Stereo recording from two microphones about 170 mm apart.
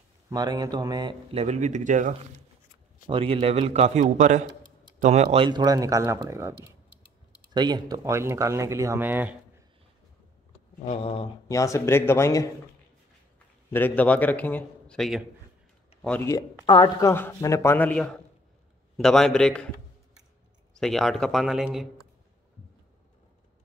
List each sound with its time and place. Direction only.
0.3 s speech: 25° right (ahead or behind)
1.3 s speech: 40° right (ahead or behind)
3.1 s a man's voice: 35° right (ahead or behind); by 6.5 s 15° right (ahead or behind)
7.5 s speech: 25° right (ahead or behind)
10.9 s a sound: 35° left (ahead or behind)
11.4 s a man's voice: 20° left (ahead or behind)
13.7 s a man's voice: 10° left (ahead or behind)
16.6 s a woman's voice: 25° left (ahead or behind); by 19.7 s 5° left (ahead or behind)
20.7 s a man's voice: centre (ahead or behind)